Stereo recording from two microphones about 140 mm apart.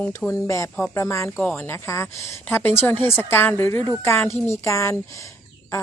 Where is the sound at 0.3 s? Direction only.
20° left (ahead or behind).